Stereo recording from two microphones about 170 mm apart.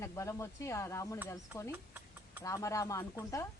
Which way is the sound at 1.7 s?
10° right (ahead or behind).